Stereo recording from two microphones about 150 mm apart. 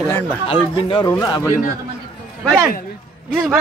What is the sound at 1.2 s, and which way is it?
Speech, 25° left (ahead or behind).